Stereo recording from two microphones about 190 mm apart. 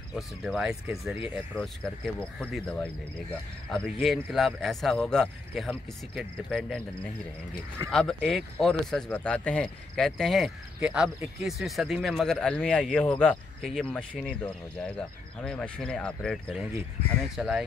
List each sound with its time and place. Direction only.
0.1 s speech: centre (ahead or behind)
2.1 s speech: 5° left (ahead or behind)
7.9 s speech: 5° left (ahead or behind)